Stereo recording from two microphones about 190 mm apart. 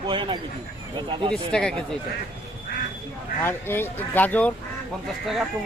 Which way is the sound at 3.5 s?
10° left (ahead or behind).